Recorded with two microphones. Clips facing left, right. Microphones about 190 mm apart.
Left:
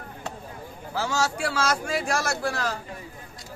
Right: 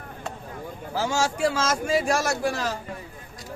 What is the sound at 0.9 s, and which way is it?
A man's voice, 25° right (ahead or behind).